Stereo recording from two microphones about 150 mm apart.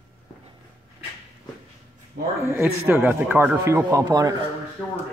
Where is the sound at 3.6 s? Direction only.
20° right (ahead or behind).